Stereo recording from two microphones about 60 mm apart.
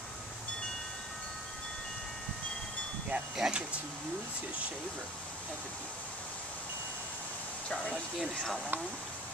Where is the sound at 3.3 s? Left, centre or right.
Centre.